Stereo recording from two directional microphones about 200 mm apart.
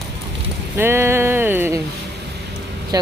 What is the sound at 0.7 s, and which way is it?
A woman's voice, 10° right (ahead or behind).